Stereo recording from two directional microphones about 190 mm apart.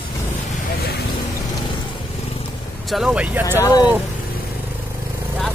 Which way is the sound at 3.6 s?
20° left (ahead or behind).